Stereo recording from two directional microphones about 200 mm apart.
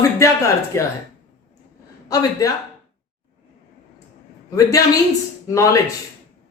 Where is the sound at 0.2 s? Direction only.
15° left (ahead or behind).